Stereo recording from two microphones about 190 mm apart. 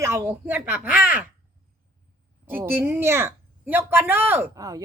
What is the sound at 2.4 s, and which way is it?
Speech, 10° right (ahead or behind).